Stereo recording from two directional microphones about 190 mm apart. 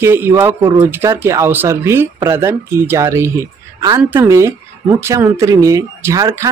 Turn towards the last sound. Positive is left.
turn(degrees=-15)  # may be behind; listen again after turning